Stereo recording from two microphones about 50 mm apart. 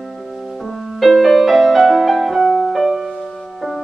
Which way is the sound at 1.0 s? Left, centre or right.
Centre.